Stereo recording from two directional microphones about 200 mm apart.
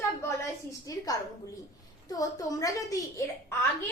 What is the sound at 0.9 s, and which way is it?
Speech, 15° left (ahead or behind).